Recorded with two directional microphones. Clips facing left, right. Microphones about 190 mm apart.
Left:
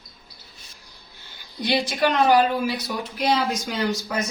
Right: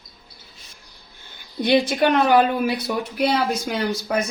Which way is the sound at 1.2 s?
55° right (ahead or behind).